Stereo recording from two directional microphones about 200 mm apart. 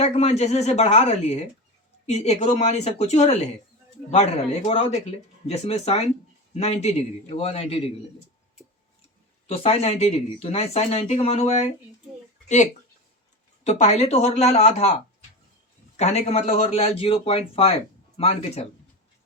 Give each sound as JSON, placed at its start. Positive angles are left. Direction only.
{"t": 0.0, "sound": "speech", "side_deg": 35}
{"t": 9.5, "sound": "speech", "side_deg": 30}
{"t": 13.7, "sound": "speech", "side_deg": 35}
{"t": 16.0, "sound": "speech", "side_deg": 35}